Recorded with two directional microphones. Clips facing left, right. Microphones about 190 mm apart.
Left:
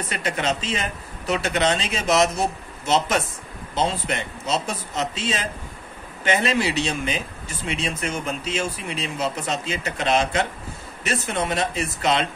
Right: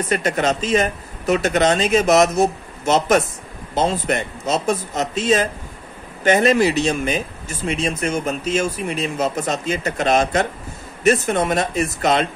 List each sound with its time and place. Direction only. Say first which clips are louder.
0.1 s speech: right 5 dB; 45° right (ahead or behind)